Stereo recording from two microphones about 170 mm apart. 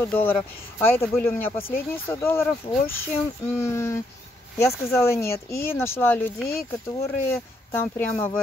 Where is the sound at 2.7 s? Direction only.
30° left (ahead or behind).